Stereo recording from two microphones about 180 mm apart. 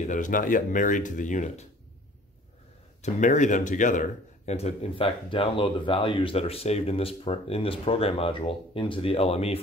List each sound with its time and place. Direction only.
0.0 s speech: 45° left (ahead or behind)
3.0 s speech: 45° left (ahead or behind)